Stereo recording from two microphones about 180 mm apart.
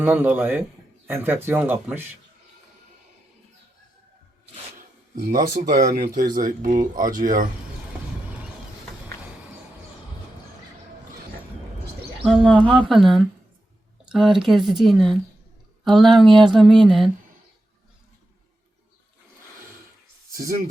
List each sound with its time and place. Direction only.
0.0 s speech: 10° right (ahead or behind)
5.1 s speech: 55° right (ahead or behind)
12.2 s speech: centre (ahead or behind)
20.3 s speech: 55° right (ahead or behind)